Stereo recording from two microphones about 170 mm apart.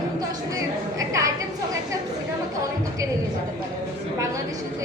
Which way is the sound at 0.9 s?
20° right (ahead or behind).